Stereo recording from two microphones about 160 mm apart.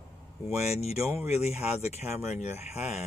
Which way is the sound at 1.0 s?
15° right (ahead or behind).